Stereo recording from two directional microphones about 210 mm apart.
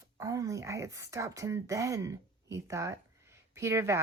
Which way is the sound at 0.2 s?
15° right (ahead or behind).